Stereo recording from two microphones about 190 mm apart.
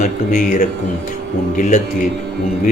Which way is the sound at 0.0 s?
40° left (ahead or behind).